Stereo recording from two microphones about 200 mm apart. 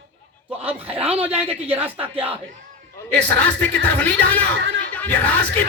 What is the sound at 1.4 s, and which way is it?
Speech, 10° right (ahead or behind).